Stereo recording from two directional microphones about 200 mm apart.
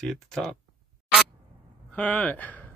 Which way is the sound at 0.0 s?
Centre (ahead or behind).